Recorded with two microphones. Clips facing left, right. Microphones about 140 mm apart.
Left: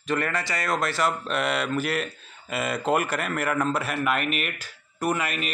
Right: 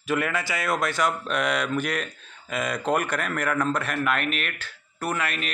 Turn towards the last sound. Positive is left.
turn(degrees=5)  # may be behind; listen again after turning